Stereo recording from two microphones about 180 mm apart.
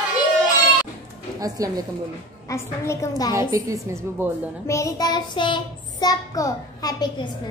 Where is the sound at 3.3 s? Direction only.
20° right (ahead or behind).